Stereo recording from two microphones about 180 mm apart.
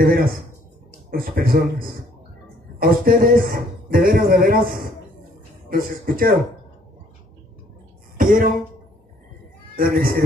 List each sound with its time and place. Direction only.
0.0 s a man's voice: 55° right (ahead or behind)
8.2 s a sound: 45° right (ahead or behind)
9.8 s a man's voice: 50° right (ahead or behind)